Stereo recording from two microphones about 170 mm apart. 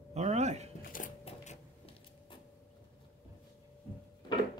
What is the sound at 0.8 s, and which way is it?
Sewing machine, 55° left (ahead or behind).